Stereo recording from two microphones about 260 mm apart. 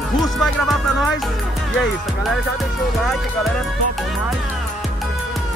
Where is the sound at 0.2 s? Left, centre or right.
Centre.